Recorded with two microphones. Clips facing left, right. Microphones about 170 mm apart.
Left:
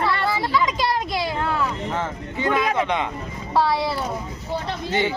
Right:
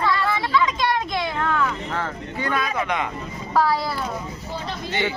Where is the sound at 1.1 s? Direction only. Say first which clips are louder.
Even; 35° left (ahead or behind).